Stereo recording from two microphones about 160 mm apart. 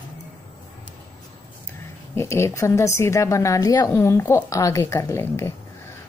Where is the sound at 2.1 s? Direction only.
15° left (ahead or behind).